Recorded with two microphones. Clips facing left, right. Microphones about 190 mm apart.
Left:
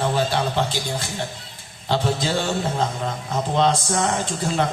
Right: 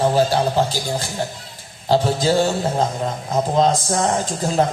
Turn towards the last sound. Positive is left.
turn(degrees=-40)  # may be behind; listen again after turning